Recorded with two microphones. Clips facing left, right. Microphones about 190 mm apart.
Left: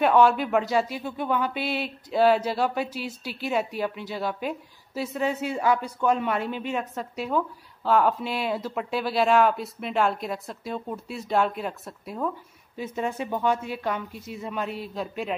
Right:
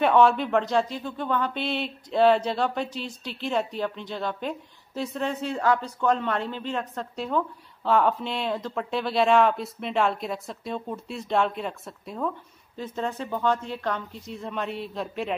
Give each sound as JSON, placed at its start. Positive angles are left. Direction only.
{"t": 0.0, "sound": "speech", "side_deg": 0}